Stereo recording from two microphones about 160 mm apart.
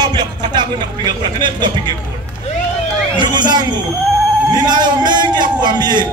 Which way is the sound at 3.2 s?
25° right (ahead or behind).